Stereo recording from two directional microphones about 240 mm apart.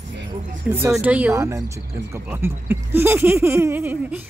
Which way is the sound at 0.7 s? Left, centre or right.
Centre.